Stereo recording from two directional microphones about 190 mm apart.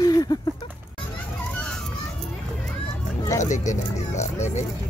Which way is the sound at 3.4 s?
40° left (ahead or behind).